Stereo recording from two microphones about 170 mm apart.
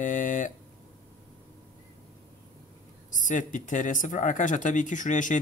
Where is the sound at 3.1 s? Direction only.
45° left (ahead or behind).